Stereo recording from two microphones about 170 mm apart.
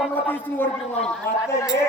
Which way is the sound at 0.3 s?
10° left (ahead or behind).